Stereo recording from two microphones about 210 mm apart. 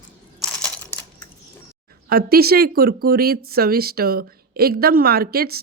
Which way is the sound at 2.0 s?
45° right (ahead or behind).